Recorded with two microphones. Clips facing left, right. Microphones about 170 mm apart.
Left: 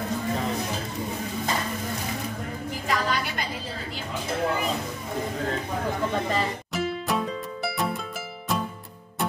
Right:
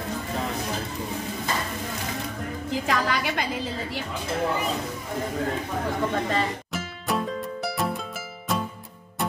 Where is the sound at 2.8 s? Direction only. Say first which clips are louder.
Even; 90° right.